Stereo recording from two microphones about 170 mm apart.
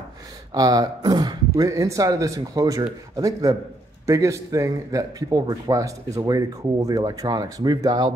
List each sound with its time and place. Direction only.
0.5 s a man's voice: 20° right (ahead or behind)